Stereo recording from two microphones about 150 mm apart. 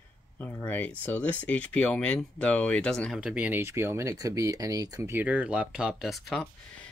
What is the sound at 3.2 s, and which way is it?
Speech, 10° right (ahead or behind).